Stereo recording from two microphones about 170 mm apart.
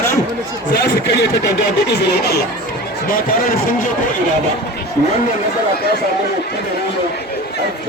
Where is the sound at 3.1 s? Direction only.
55° left (ahead or behind).